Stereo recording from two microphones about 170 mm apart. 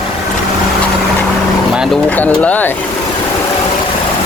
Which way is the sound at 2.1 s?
10° left (ahead or behind).